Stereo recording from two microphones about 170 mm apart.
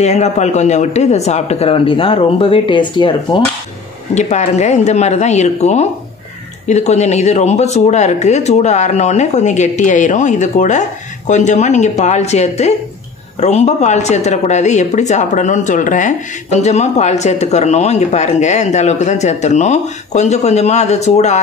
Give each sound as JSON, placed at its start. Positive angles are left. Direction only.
{"t": 0.0, "sound": "speech", "side_deg": 40}
{"t": 4.1, "sound": "speech", "side_deg": 40}